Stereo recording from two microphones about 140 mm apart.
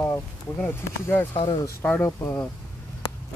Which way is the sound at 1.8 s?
15° left (ahead or behind).